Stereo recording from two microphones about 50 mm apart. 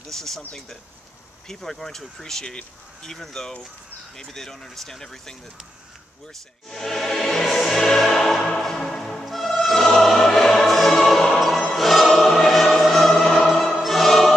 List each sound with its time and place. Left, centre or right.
0.1 s speech: centre
1.5 s speech: centre
6.7 s speech: centre
7.4 s music: centre